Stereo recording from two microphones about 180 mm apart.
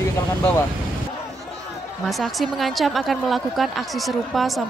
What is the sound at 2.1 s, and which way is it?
Speech, centre (ahead or behind).